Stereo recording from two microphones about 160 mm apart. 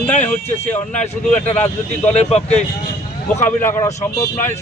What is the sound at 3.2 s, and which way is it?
Speech, 15° left (ahead or behind).